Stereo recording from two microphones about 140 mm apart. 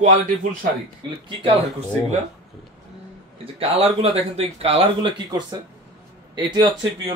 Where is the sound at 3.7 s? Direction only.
45° right (ahead or behind).